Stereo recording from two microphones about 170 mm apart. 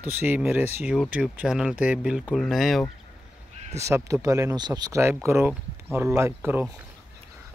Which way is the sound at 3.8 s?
15° right (ahead or behind).